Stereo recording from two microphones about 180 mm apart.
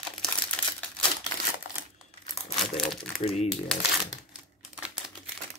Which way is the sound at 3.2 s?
35° left (ahead or behind).